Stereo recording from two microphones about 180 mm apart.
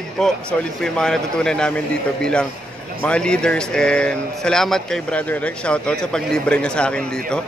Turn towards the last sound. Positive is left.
turn(degrees=5)  # may be behind; listen again after turning